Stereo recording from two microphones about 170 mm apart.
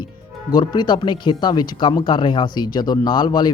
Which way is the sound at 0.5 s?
25° left (ahead or behind).